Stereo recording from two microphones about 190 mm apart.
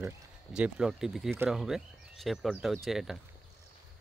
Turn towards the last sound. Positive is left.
turn(degrees=0)  # may be behind; listen again after turning